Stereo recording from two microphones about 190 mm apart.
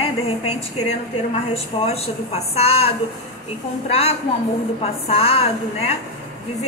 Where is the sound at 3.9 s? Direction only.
30° left (ahead or behind).